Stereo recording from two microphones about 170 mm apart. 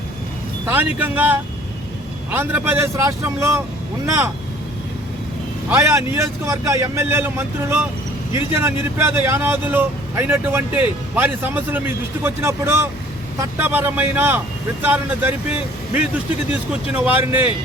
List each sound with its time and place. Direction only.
0.7 s speech: 10° right (ahead or behind)
5.6 s speech: 15° right (ahead or behind)